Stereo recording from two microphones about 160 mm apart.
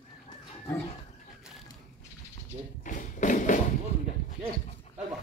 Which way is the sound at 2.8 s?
55° left (ahead or behind).